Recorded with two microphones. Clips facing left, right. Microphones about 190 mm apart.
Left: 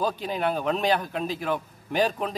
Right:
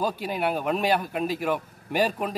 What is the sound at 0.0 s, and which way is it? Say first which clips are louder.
A man's voice: even; 10° right (ahead or behind).